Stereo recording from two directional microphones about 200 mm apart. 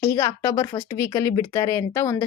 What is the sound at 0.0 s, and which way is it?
A woman's voice, 15° left (ahead or behind).